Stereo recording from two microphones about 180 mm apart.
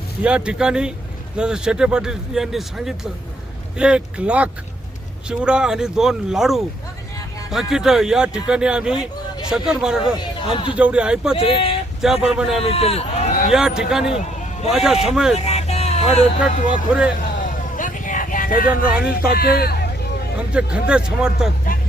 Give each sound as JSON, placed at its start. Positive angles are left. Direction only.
{"t": 0.2, "sound": "speech", "side_deg": -5}
{"t": 10.0, "sound": "speech", "side_deg": 30}
{"t": 10.8, "sound": "speech", "side_deg": -5}
{"t": 11.3, "sound": "speech", "side_deg": 30}
{"t": 12.0, "sound": "speech", "side_deg": -5}
{"t": 12.6, "sound": "speech", "side_deg": 35}
{"t": 13.5, "sound": "speech", "side_deg": -5}
{"t": 15.4, "sound": "speech", "side_deg": 35}
{"t": 17.4, "sound": "vehicle", "side_deg": 45}
{"t": 19.0, "sound": "a man's voice", "side_deg": 55}
{"t": 20.5, "sound": "speech", "side_deg": -5}